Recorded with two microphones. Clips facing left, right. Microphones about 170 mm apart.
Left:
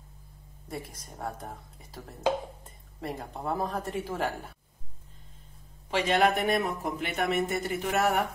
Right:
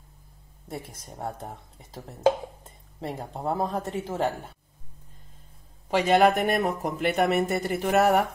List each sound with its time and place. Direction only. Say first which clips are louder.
0.7 s speech: right 2 dB; 25° right (ahead or behind)
3.0 s speech: right 3 dB; 30° right (ahead or behind)
5.9 s speech: right 5 dB; 40° right (ahead or behind)